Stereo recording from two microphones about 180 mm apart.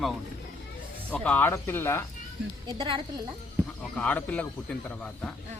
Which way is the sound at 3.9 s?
10° left (ahead or behind).